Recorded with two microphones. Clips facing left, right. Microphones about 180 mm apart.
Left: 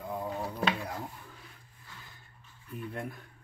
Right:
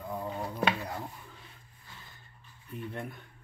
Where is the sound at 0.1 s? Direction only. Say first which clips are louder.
Left 1 dB; 5° left (ahead or behind).